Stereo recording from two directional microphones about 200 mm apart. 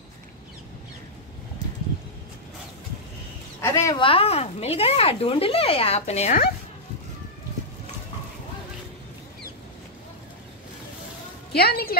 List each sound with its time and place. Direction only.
3.6 s speech: 20° left (ahead or behind); by 6.4 s 35° left (ahead or behind)
11.5 s a woman's voice: 50° left (ahead or behind)